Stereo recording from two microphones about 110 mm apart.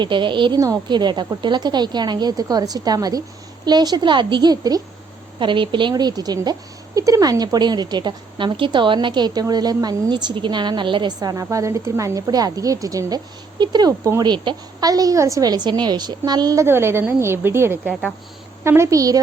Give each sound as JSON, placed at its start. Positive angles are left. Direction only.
{"t": 0.0, "sound": "a woman's voice", "side_deg": -45}
{"t": 16.6, "sound": "a woman's voice", "side_deg": -20}